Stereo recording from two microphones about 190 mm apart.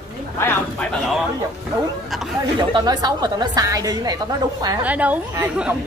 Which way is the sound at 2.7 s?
20° right (ahead or behind).